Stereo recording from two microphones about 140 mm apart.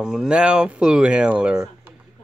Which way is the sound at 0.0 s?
5° right (ahead or behind).